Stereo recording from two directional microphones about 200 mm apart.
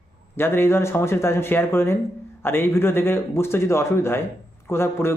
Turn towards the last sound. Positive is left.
turn(degrees=10)  # may be behind; listen again after turning